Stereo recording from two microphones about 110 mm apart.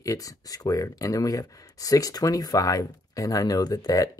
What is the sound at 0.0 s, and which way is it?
Speech, 30° left (ahead or behind).